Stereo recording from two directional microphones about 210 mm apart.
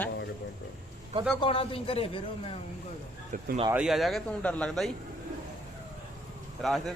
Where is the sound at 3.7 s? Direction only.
5° right (ahead or behind).